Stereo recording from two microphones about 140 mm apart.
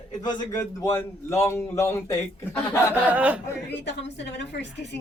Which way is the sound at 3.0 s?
10° right (ahead or behind).